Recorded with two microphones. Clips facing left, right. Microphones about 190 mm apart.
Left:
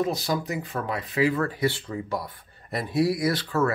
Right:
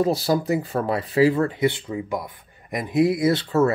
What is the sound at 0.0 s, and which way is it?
Speech, 30° right (ahead or behind).